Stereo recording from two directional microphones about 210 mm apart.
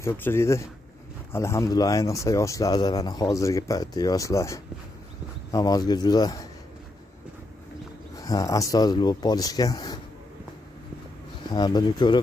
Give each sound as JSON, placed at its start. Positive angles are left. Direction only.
{"t": 0.0, "sound": "speech", "side_deg": 10}
{"t": 8.2, "sound": "speech", "side_deg": 15}
{"t": 11.5, "sound": "speech", "side_deg": 20}